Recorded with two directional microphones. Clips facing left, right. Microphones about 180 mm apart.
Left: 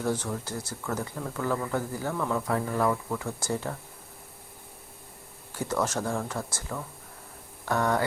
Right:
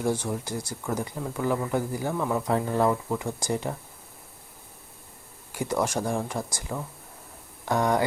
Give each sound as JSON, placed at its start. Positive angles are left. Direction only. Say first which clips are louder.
{"t": 0.0, "sound": "speech", "louder": "right 2 dB", "side_deg": -10}
{"t": 5.5, "sound": "speech", "louder": "right 2 dB", "side_deg": -15}